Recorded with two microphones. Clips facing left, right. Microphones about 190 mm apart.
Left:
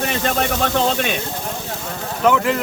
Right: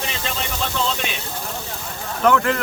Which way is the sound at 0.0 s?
55° left (ahead or behind).